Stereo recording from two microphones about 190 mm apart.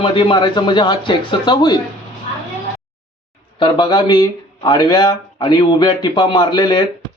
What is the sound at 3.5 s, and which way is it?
Speech, 25° left (ahead or behind).